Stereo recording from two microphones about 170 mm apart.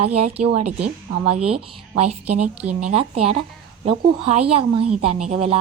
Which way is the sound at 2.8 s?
35° right (ahead or behind).